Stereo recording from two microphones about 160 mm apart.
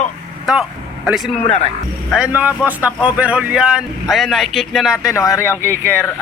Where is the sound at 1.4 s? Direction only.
40° left (ahead or behind).